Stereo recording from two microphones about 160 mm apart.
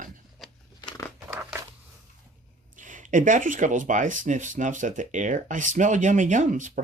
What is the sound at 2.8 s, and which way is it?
Speech, 55° right (ahead or behind).